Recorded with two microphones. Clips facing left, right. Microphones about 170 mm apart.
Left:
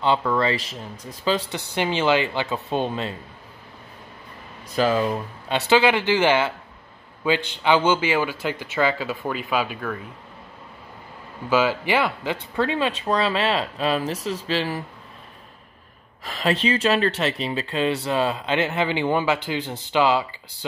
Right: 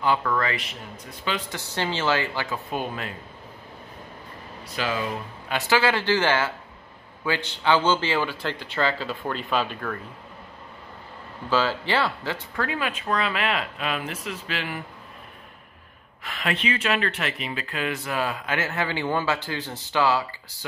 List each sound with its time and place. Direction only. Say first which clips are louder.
0.0 s speech: left 3 dB; 25° left (ahead or behind)
1.8 s speech: left 4 dB; 15° left (ahead or behind)
4.7 s speech: left 8 dB; 40° left (ahead or behind)
5.5 s speech: left 4 dB; 20° left (ahead or behind)
11.4 s speech: left 3 dB; 10° left (ahead or behind)
12.5 s speech: left 6 dB; 25° left (ahead or behind)
16.3 s speech: left 5 dB; 35° left (ahead or behind); by 20.2 s 15° left (ahead or behind)